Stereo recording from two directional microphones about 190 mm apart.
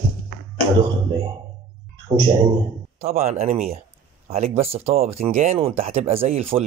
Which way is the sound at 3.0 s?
35° right (ahead or behind).